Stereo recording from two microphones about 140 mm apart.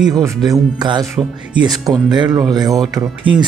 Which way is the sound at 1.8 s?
25° right (ahead or behind).